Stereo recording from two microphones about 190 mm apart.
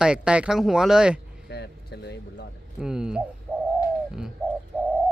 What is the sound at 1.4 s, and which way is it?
Music, 60° left (ahead or behind).